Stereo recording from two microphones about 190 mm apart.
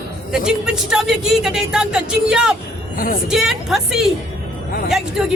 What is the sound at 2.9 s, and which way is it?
Speech, 45° left (ahead or behind).